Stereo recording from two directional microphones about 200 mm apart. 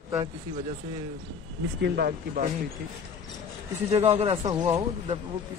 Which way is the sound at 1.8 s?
50° right (ahead or behind).